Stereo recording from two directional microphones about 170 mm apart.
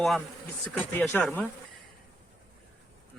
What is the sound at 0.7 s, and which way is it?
Speech, 10° left (ahead or behind).